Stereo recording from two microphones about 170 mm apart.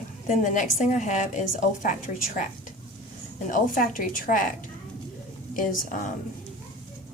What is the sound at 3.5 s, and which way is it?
A woman's voice, 50° left (ahead or behind).